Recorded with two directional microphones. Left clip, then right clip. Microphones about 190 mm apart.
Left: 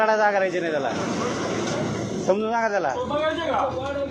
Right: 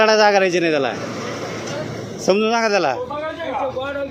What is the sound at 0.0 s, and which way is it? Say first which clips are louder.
Speech: right 6 dB; 90° right.